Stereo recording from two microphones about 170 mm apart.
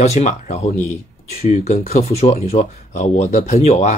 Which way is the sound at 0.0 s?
40° left (ahead or behind).